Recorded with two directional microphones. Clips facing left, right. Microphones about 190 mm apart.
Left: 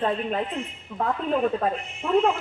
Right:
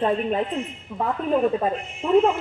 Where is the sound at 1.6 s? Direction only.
15° right (ahead or behind).